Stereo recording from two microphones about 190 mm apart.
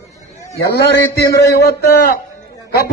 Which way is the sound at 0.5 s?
60° left (ahead or behind).